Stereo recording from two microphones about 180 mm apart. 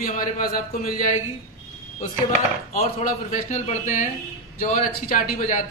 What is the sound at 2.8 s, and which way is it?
Speech, 45° left (ahead or behind).